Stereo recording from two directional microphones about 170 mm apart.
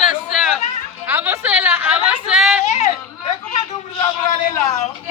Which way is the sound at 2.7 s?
40° left (ahead or behind).